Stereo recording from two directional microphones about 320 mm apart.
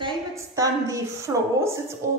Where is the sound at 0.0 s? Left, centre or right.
Centre.